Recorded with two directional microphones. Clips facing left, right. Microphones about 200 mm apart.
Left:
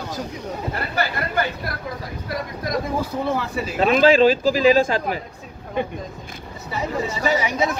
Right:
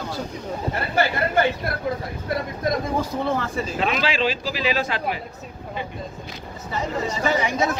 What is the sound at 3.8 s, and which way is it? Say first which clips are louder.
Speech: left 10 dB; 45° left (ahead or behind).